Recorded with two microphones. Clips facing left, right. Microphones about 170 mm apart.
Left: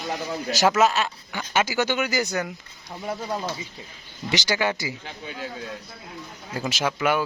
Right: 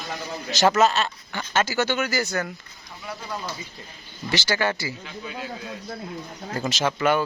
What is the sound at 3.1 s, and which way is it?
Speech, 50° left (ahead or behind).